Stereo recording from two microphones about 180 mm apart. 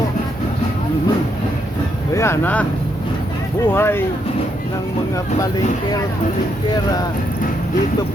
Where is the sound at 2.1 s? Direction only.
15° left (ahead or behind).